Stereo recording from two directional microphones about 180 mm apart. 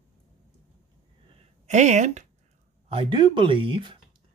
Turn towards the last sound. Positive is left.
turn(degrees=-30)  # may be behind; listen again after turning